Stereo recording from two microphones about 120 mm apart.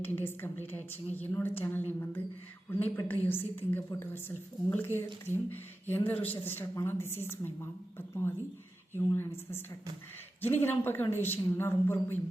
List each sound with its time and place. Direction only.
0.0 s a woman's voice: 20° left (ahead or behind)